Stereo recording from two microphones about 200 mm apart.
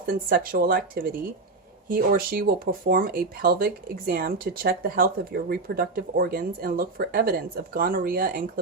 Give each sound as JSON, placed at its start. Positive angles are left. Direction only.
{"t": 0.0, "sound": "speech", "side_deg": -45}